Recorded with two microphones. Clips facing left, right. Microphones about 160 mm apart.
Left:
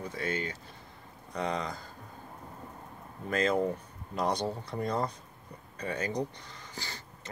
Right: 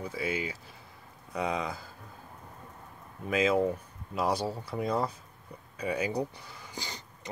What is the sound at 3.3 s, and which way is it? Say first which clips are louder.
Speech: right 2 dB; 5° right (ahead or behind).